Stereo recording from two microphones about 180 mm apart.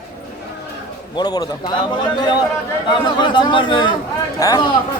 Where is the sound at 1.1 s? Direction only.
25° left (ahead or behind).